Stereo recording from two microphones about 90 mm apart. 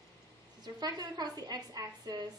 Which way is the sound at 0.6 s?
50° right (ahead or behind).